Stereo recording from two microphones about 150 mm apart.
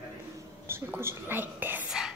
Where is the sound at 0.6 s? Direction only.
15° right (ahead or behind).